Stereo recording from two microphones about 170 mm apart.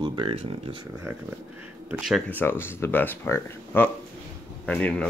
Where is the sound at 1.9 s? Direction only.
Centre (ahead or behind).